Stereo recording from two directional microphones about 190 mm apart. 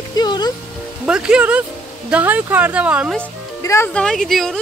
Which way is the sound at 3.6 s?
15° left (ahead or behind).